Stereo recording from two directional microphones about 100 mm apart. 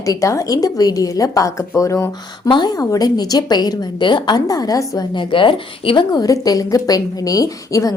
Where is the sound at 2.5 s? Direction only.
45° left (ahead or behind).